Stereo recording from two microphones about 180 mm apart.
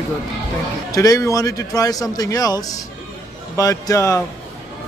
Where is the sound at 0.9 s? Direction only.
20° left (ahead or behind).